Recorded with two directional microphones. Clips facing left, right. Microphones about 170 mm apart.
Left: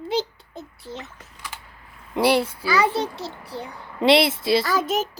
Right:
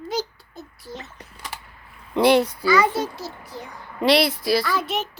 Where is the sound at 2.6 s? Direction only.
30° left (ahead or behind).